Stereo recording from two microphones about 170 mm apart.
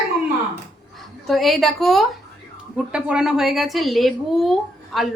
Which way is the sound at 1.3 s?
Centre (ahead or behind).